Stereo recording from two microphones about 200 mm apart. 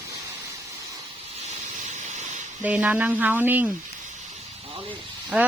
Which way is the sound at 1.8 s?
35° right (ahead or behind).